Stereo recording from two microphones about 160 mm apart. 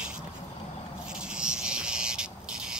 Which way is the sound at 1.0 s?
5° right (ahead or behind).